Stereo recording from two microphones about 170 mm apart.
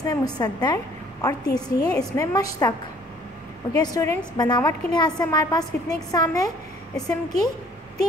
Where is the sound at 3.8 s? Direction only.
20° left (ahead or behind).